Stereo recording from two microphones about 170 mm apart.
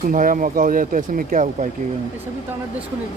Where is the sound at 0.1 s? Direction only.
50° right (ahead or behind).